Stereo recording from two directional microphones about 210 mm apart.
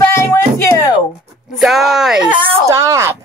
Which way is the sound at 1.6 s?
Centre (ahead or behind).